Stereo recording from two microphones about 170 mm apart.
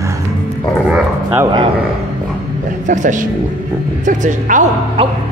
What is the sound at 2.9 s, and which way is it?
Speech, 50° right (ahead or behind).